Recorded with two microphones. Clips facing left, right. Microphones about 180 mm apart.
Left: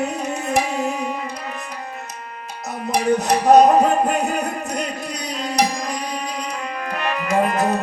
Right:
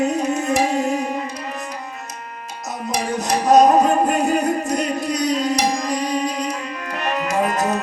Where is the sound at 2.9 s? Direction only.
60° left (ahead or behind).